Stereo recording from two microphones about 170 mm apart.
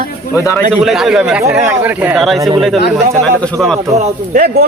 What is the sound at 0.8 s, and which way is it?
Speech, 5° right (ahead or behind).